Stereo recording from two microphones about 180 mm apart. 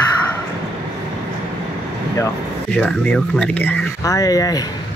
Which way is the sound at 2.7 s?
5° left (ahead or behind).